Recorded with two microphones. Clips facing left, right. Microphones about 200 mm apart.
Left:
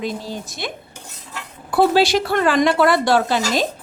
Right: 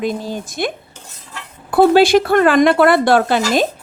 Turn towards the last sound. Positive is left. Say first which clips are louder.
# right 4 dB
turn(degrees=-55)  # may be behind; listen again after turning